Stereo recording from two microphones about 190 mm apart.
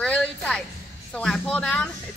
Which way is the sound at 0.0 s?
5° left (ahead or behind).